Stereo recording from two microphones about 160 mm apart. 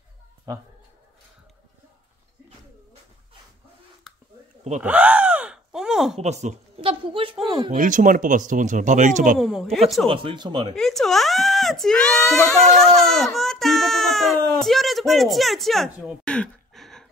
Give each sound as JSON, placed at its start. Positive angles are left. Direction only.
{"t": 0.5, "sound": "speech", "side_deg": -20}
{"t": 4.1, "sound": "a sound", "side_deg": 0}
{"t": 4.8, "sound": "gasp", "side_deg": -10}
{"t": 6.1, "sound": "speech", "side_deg": -45}
{"t": 7.7, "sound": "speech", "side_deg": -55}
{"t": 9.4, "sound": "a child's voice", "side_deg": 0}
{"t": 10.0, "sound": "speech", "side_deg": -35}
{"t": 10.8, "sound": "a child's voice", "side_deg": 0}